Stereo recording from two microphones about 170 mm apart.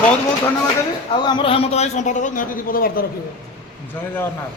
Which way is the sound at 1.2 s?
25° left (ahead or behind).